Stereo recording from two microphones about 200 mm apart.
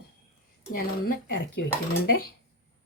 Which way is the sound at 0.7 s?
45° left (ahead or behind).